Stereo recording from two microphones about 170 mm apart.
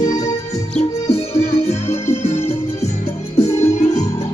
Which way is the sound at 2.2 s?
40° left (ahead or behind).